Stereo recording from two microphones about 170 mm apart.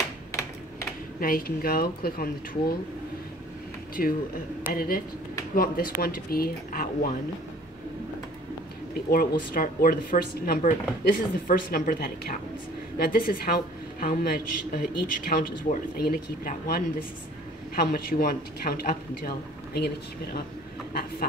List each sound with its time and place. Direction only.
0.3 s typing: 15° left (ahead or behind)
1.2 s a woman's voice: 55° left (ahead or behind)
4.0 s a woman's voice: 55° left (ahead or behind)
9.1 s a woman's voice: 60° left (ahead or behind)